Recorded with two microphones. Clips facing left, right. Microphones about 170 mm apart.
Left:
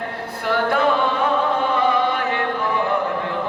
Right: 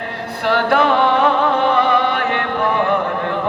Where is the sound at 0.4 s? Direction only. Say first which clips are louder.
Right 4 dB; 75° right (ahead or behind).